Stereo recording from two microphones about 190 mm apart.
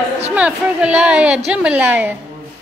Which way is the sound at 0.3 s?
5° right (ahead or behind).